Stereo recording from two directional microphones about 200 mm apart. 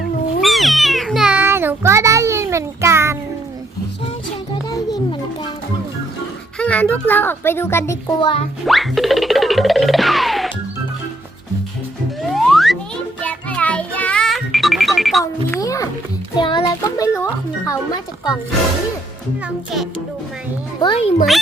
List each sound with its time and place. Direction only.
0.4 s cat: centre (ahead or behind)
6.6 s a child's voice: 5° left (ahead or behind)
8.2 s a child's voice: 25° left (ahead or behind)
8.6 s music: centre (ahead or behind)
12.2 s music: centre (ahead or behind)
15.2 s a sound: 15° left (ahead or behind)
16.4 s music: 25° left (ahead or behind)
20.8 s a child's voice: 30° left (ahead or behind)